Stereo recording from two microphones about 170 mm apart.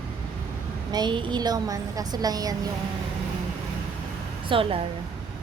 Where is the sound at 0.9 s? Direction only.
25° right (ahead or behind).